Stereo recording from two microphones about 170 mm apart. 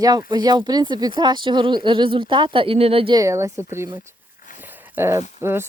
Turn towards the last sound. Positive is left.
turn(degrees=-15)  # may be behind; listen again after turning